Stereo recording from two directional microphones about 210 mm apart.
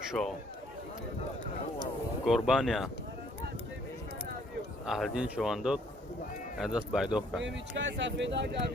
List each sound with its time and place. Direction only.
0.1 s speech: centre (ahead or behind)
2.2 s speech: centre (ahead or behind)
4.9 s speech: centre (ahead or behind)
7.4 s speech: 60° right (ahead or behind)